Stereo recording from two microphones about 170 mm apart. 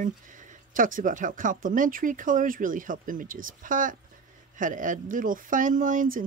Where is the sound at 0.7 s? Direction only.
50° right (ahead or behind).